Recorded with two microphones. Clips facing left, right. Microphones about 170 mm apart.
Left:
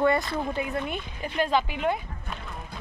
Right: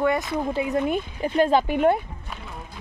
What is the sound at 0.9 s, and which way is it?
Speech, 40° right (ahead or behind).